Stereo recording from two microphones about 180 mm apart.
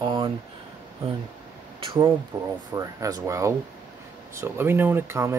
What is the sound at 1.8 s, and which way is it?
Speech, 25° right (ahead or behind).